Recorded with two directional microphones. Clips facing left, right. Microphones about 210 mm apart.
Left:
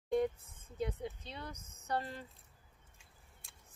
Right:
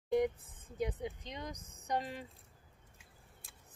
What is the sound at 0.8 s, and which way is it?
Speech, 15° right (ahead or behind).